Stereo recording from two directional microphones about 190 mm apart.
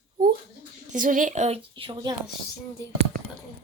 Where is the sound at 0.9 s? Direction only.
45° right (ahead or behind); by 2.1 s 30° right (ahead or behind).